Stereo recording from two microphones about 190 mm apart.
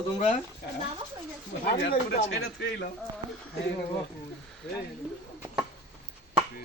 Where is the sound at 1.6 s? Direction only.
55° left (ahead or behind).